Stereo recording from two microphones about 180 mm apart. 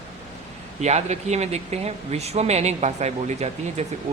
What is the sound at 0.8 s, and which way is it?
Speech, 35° right (ahead or behind).